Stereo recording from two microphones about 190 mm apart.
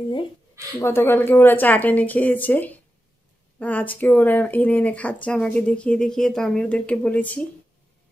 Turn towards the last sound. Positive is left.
turn(degrees=10)  # may be behind; listen again after turning